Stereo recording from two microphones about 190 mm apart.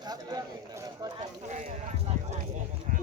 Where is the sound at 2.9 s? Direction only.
40° right (ahead or behind).